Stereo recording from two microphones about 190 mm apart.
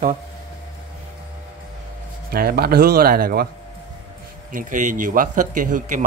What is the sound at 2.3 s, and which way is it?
A man's voice, 55° right (ahead or behind).